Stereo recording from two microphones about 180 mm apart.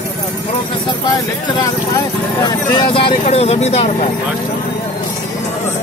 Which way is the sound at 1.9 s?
20° left (ahead or behind).